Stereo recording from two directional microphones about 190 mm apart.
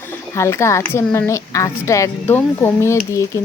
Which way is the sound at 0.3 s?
15° left (ahead or behind).